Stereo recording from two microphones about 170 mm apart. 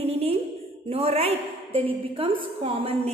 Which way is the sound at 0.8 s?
35° right (ahead or behind).